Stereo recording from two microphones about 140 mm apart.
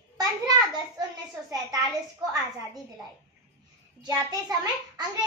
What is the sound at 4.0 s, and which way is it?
A child's voice, 30° right (ahead or behind).